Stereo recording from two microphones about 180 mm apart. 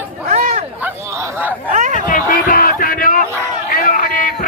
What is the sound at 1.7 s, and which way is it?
Speech, 45° right (ahead or behind).